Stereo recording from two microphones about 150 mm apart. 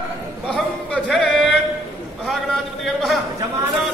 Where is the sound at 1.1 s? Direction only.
Centre (ahead or behind).